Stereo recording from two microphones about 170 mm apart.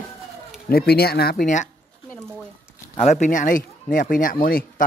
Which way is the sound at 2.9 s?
45° left (ahead or behind).